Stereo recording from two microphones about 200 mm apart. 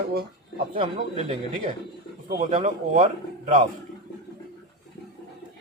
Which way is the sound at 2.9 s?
40° right (ahead or behind).